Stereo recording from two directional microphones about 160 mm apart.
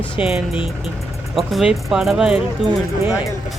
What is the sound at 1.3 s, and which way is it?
Speech, 5° right (ahead or behind).